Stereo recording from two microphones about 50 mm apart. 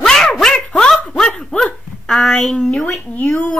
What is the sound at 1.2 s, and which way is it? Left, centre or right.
Dog, centre.